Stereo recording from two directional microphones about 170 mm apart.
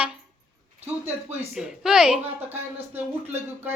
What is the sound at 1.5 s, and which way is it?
Speech, 5° right (ahead or behind).